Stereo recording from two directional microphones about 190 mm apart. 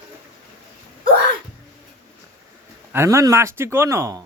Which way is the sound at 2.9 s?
15° right (ahead or behind).